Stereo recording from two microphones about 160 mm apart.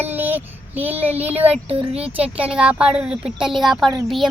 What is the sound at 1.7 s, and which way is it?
Speech, 40° right (ahead or behind).